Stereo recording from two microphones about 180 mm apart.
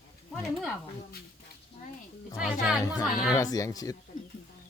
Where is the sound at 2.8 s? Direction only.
20° left (ahead or behind).